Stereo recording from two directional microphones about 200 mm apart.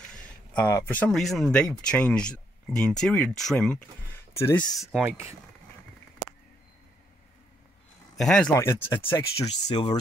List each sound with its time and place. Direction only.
0.6 s speech: 10° left (ahead or behind)
4.7 s speech: 5° right (ahead or behind)
8.2 s speech: 5° left (ahead or behind)
9.7 s speech: 20° left (ahead or behind)